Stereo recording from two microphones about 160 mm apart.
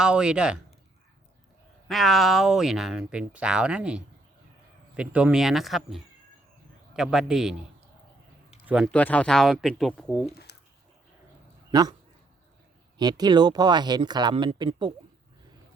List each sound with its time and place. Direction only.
0.0 s speech: 5° right (ahead or behind)
1.9 s speech: centre (ahead or behind)
8.6 s speech: 5° right (ahead or behind)
8.9 s speech: 10° left (ahead or behind)
10.5 s a sound: 90° left
11.7 s a man's voice: 25° right (ahead or behind)
13.0 s speech: 25° right (ahead or behind)